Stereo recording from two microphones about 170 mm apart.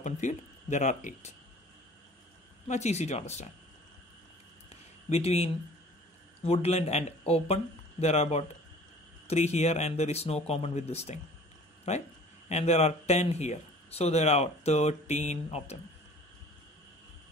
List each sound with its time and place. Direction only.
0.0 s speech: 45° left (ahead or behind)
2.7 s speech: 40° left (ahead or behind)
5.1 s speech: 40° left (ahead or behind)